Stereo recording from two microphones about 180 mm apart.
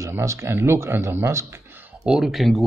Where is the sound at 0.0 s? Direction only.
15° right (ahead or behind).